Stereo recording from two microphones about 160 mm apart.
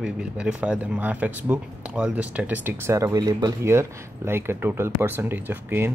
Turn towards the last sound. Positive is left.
turn(degrees=-15)  # may be behind; listen again after turning